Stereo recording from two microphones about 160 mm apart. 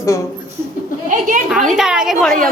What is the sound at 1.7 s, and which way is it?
Speech, 5° right (ahead or behind).